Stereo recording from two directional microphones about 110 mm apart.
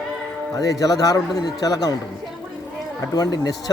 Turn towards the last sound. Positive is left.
turn(degrees=35)  # may be behind; listen again after turning